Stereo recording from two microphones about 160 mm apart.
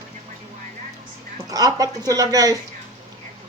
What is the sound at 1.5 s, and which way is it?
Speech, 20° right (ahead or behind).